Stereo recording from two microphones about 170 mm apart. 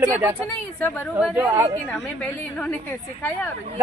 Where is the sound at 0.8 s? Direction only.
15° left (ahead or behind).